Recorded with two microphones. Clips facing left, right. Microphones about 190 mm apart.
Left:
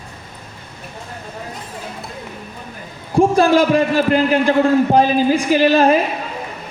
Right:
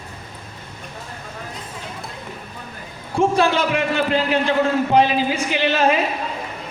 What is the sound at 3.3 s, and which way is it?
A man's voice, 40° left (ahead or behind).